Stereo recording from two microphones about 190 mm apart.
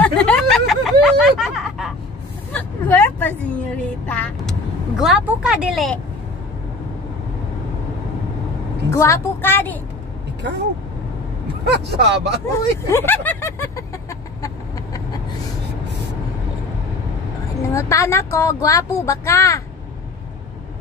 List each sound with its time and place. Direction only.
0.0 s a sound: 5° left (ahead or behind)
2.5 s vehicle: 10° left (ahead or behind)
8.9 s speech: 15° left (ahead or behind)
11.6 s speech: 65° right (ahead or behind)
12.8 s chicken: 10° left (ahead or behind)
17.6 s speech: 15° left (ahead or behind)